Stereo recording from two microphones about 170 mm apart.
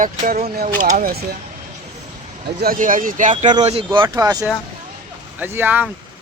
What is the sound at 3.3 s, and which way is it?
Speech, 30° right (ahead or behind).